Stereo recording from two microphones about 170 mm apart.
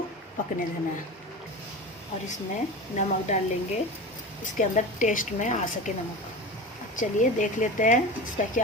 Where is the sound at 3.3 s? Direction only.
40° left (ahead or behind).